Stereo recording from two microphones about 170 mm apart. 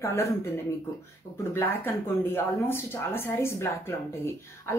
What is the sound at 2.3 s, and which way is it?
A woman's voice, 15° left (ahead or behind).